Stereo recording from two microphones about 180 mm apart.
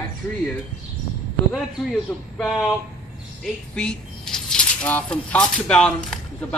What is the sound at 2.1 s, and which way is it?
Speech, 5° left (ahead or behind).